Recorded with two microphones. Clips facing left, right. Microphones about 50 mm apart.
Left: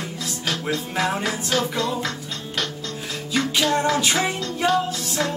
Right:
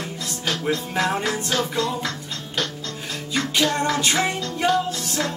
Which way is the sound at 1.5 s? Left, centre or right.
Centre.